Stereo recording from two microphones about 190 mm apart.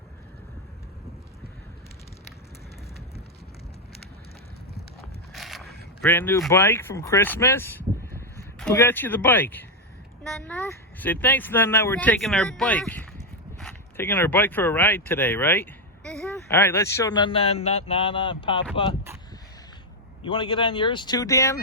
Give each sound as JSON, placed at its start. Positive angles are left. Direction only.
{"t": 5.3, "sound": "vehicle", "side_deg": 0}
{"t": 6.0, "sound": "a man's voice", "side_deg": 10}
{"t": 20.2, "sound": "a man's voice", "side_deg": 25}